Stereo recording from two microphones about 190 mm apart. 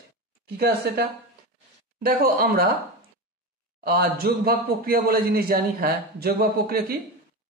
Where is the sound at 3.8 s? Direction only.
55° right (ahead or behind).